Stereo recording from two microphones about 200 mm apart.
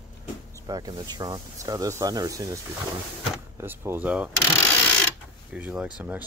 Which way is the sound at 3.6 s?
10° right (ahead or behind).